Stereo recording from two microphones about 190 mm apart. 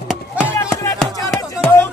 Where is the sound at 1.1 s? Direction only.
20° left (ahead or behind).